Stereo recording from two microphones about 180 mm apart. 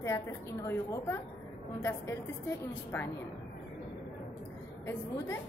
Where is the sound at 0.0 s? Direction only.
15° left (ahead or behind).